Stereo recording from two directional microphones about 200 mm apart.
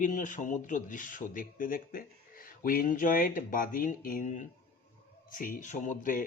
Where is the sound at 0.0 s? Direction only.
40° left (ahead or behind).